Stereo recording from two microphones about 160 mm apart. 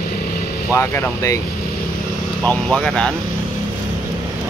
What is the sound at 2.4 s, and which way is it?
Speech, 5° left (ahead or behind).